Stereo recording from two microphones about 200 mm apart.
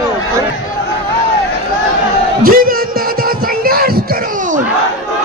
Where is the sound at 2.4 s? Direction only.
45° right (ahead or behind).